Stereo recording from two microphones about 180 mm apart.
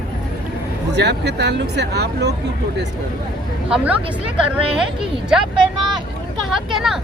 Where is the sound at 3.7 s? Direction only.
5° right (ahead or behind).